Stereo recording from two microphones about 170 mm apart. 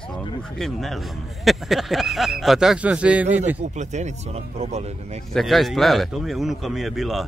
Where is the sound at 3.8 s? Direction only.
45° right (ahead or behind).